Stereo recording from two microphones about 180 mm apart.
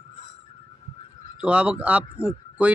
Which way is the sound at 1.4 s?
5° right (ahead or behind).